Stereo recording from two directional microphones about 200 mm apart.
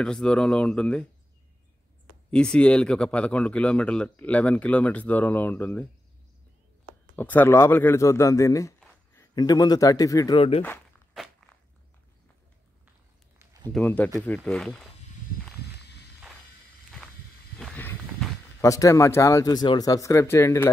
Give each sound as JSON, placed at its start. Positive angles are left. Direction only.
{"t": 0.0, "sound": "speech", "side_deg": 5}
{"t": 2.3, "sound": "speech", "side_deg": 5}
{"t": 7.2, "sound": "speech", "side_deg": 10}
{"t": 13.4, "sound": "a sound", "side_deg": -15}
{"t": 13.7, "sound": "speech", "side_deg": 5}
{"t": 17.6, "sound": "speech", "side_deg": 5}